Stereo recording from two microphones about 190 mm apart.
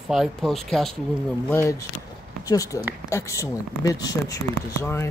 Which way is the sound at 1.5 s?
15° left (ahead or behind).